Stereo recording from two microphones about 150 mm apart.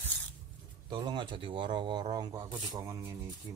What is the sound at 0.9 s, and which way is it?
Speech, 30° right (ahead or behind).